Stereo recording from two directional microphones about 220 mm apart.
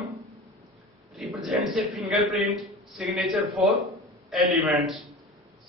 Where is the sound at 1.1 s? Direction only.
Centre (ahead or behind).